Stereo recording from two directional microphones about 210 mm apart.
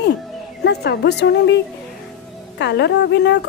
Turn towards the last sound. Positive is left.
turn(degrees=55)  # may be behind; listen again after turning